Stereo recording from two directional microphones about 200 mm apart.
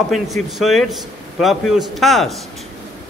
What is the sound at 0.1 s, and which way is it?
A man's voice, centre (ahead or behind).